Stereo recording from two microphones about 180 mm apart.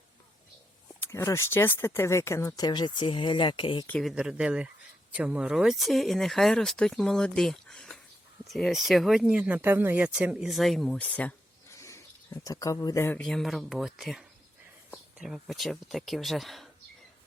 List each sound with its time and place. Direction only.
1.0 s speech: 15° left (ahead or behind)
3.8 s speech: 5° left (ahead or behind)
4.1 s speech: 5° right (ahead or behind)